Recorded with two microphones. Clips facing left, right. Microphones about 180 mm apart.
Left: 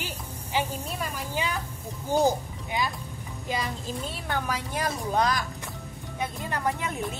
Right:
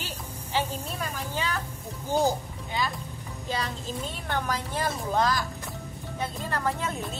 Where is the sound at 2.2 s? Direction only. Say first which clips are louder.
Left 2 dB; 15° left (ahead or behind).